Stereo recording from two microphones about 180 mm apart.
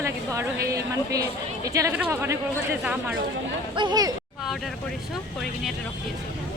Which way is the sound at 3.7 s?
25° right (ahead or behind).